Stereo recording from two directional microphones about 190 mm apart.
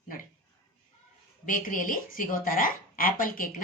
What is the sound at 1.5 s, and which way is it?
A woman's voice, 45° left (ahead or behind).